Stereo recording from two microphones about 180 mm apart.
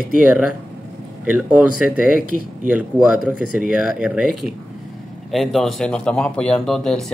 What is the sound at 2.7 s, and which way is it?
Speech, 10° right (ahead or behind).